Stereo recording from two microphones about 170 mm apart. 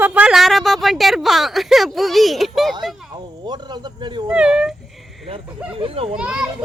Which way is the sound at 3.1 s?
25° right (ahead or behind).